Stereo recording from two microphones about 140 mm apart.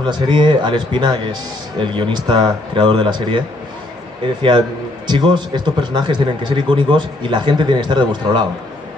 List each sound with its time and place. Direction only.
0.0 s a man's voice: 35° right (ahead or behind)